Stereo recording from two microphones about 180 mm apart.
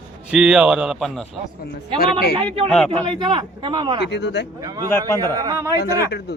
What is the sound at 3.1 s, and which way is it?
Speech, 25° right (ahead or behind).